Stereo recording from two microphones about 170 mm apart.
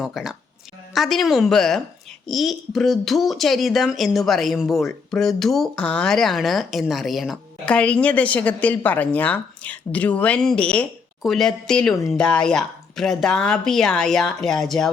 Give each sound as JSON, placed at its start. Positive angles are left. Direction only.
{"t": 0.0, "sound": "speech", "side_deg": 0}